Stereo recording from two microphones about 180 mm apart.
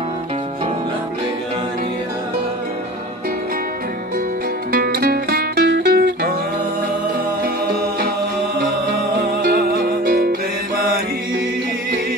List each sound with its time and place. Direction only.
4.7 s music: 55° right (ahead or behind)
7.4 s music: 55° right (ahead or behind)
9.4 s music: 55° right (ahead or behind)